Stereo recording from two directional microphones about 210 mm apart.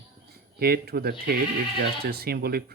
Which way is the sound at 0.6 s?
45° right (ahead or behind).